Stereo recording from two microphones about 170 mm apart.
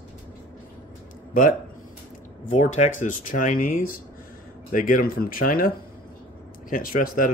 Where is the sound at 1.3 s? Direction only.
50° left (ahead or behind).